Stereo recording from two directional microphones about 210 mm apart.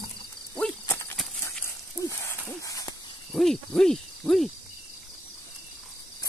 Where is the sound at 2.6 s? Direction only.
15° left (ahead or behind).